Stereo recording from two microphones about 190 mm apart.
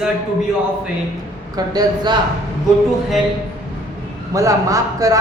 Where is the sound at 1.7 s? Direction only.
20° right (ahead or behind).